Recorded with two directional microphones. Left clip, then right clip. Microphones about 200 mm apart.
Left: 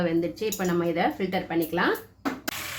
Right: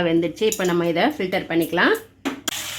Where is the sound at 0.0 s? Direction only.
45° right (ahead or behind).